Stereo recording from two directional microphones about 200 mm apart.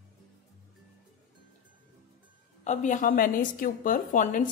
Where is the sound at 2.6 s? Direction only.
40° left (ahead or behind).